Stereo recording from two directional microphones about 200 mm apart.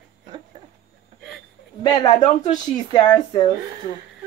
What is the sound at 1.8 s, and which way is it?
Speech, 20° left (ahead or behind).